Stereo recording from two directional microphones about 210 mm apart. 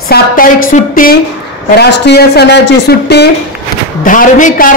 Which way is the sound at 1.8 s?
50° left (ahead or behind).